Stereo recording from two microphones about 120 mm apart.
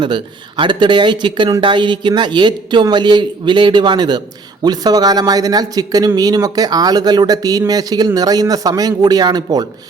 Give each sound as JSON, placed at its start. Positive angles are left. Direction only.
{"t": 0.0, "sound": "speech", "side_deg": -40}